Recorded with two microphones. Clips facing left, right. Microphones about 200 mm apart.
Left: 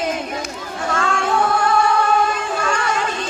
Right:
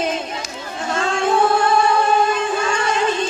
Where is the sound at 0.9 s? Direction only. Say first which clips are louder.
Right 1 dB; 20° right (ahead or behind).